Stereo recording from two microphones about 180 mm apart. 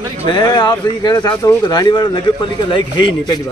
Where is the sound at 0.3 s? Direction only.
25° left (ahead or behind).